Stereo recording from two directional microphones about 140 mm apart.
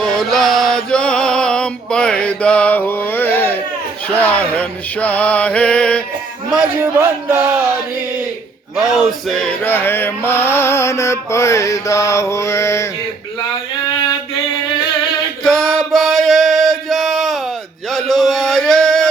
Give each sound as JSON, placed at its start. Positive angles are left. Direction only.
{"t": 0.0, "sound": "chant", "side_deg": 5}
{"t": 4.1, "sound": "mantra", "side_deg": 10}
{"t": 6.7, "sound": "music", "side_deg": -15}
{"t": 8.7, "sound": "chant", "side_deg": 0}
{"t": 15.4, "sound": "music", "side_deg": 5}
{"t": 17.9, "sound": "a sound", "side_deg": 0}